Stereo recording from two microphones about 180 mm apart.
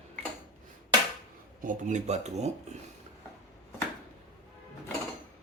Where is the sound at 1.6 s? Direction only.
45° right (ahead or behind).